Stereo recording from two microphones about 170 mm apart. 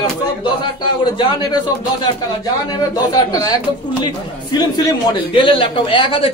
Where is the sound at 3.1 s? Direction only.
20° left (ahead or behind).